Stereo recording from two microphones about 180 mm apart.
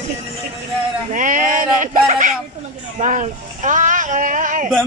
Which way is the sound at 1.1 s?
45° right (ahead or behind).